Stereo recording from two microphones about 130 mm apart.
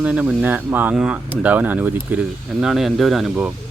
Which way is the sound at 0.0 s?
10° right (ahead or behind).